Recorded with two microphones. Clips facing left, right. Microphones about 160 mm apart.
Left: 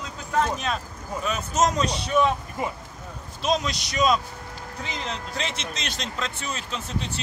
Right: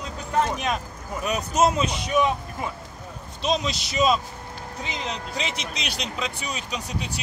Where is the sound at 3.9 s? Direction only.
25° right (ahead or behind).